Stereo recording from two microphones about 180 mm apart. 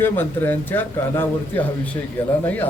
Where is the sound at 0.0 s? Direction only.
10° left (ahead or behind).